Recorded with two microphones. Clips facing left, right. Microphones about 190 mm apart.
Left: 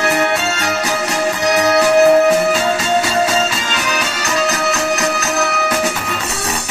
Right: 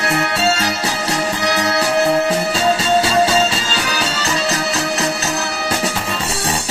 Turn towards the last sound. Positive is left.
turn(degrees=-30)  # may be behind; listen again after turning